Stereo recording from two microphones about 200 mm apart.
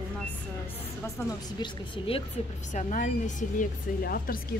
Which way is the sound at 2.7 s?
40° left (ahead or behind).